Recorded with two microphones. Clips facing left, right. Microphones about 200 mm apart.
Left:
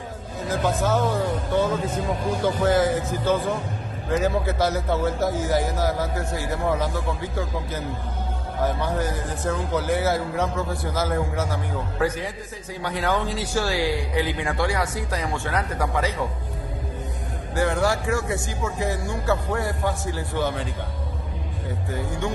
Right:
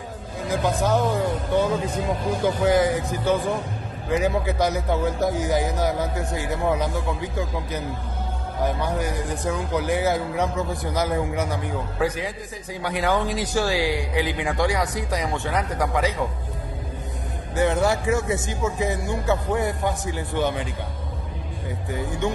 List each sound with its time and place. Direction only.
0.5 s a man's voice: 15° right (ahead or behind)
17.6 s speech: 20° right (ahead or behind)
21.9 s speech: 20° right (ahead or behind)